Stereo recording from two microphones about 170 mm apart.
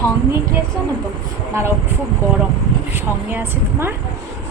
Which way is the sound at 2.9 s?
10° right (ahead or behind).